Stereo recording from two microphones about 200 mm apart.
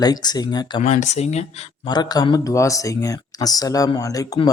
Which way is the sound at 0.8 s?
35° left (ahead or behind).